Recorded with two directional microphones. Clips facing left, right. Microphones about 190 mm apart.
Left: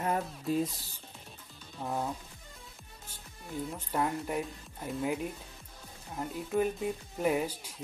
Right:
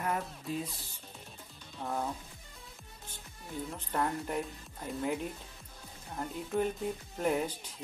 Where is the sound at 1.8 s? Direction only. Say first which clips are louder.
Left 1 dB; 5° left (ahead or behind).